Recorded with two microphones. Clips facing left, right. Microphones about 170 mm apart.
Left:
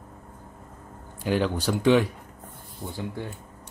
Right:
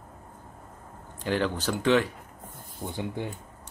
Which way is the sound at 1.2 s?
10° left (ahead or behind).